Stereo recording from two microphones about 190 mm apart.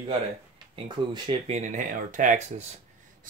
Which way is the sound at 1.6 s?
40° right (ahead or behind).